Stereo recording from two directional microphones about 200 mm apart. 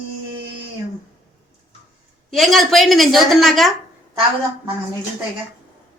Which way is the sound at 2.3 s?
Centre (ahead or behind).